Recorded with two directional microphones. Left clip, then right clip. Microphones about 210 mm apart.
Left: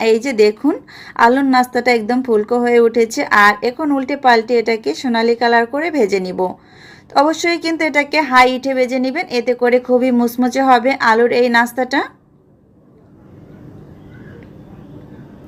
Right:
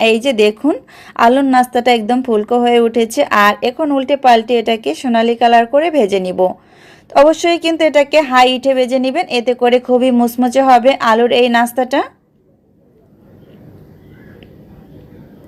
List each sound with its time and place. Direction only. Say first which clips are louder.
0.2 s a woman's voice: right 1 dB; 30° right (ahead or behind)